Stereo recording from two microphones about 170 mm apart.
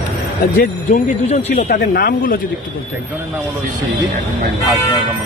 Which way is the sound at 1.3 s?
50° left (ahead or behind).